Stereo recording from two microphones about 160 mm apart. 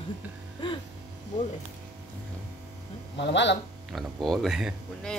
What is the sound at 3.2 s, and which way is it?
Speech, 90° left.